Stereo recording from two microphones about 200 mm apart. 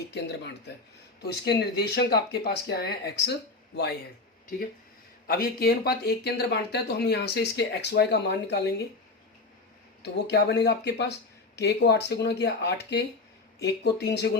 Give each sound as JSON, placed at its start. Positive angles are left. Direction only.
{"t": 0.1, "sound": "speech", "side_deg": 60}
{"t": 5.3, "sound": "speech", "side_deg": 50}
{"t": 10.0, "sound": "speech", "side_deg": 55}